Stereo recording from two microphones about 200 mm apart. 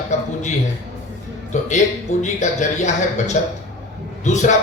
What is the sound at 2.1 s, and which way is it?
Speech, 35° left (ahead or behind).